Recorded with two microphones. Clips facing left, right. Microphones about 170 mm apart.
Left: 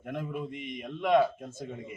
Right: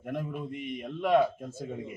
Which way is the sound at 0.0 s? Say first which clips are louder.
Even; 10° right (ahead or behind).